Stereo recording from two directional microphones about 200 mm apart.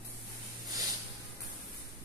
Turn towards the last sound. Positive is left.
turn(degrees=-20)  # may be behind; listen again after turning